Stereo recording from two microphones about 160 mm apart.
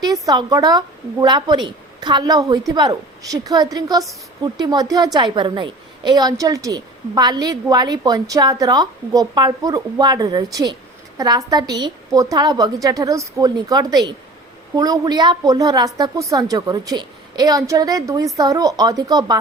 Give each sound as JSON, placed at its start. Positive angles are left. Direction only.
{"t": 0.0, "sound": "a woman's voice", "side_deg": -25}